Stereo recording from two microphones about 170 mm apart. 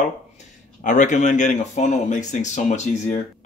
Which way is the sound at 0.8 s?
45° left (ahead or behind).